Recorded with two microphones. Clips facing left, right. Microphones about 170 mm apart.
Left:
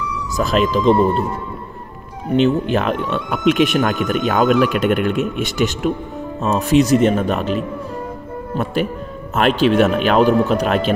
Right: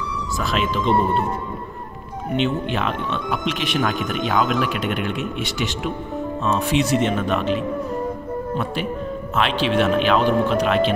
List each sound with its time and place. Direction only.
0.4 s speech: 40° left (ahead or behind)
2.3 s speech: 40° left (ahead or behind)
9.3 s speech: 45° left (ahead or behind)